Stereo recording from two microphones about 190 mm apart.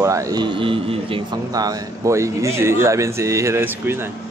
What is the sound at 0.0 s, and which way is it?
Speech, 15° right (ahead or behind).